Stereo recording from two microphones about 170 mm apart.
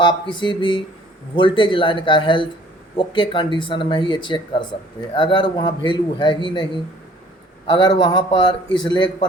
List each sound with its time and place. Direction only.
0.0 s speech: 25° left (ahead or behind)
7.7 s speech: 25° left (ahead or behind)